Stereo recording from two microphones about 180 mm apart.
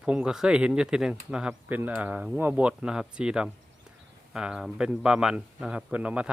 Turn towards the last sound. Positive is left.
turn(degrees=-5)  # may be behind; listen again after turning